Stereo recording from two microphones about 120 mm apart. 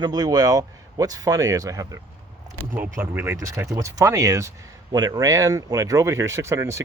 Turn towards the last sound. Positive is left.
turn(degrees=-25)  # may be behind; listen again after turning